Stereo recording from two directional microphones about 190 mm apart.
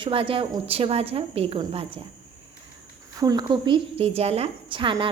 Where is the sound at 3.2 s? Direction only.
20° right (ahead or behind).